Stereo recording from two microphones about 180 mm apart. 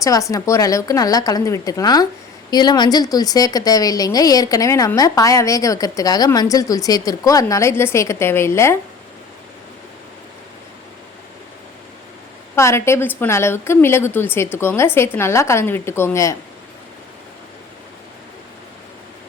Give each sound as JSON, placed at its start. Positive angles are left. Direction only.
{"t": 0.0, "sound": "speech", "side_deg": 20}
{"t": 12.5, "sound": "a woman's voice", "side_deg": 15}